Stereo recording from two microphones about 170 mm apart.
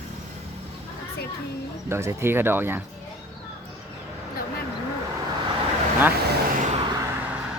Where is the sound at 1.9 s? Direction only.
15° right (ahead or behind).